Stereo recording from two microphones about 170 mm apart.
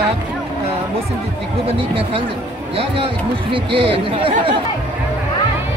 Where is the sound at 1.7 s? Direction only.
30° right (ahead or behind).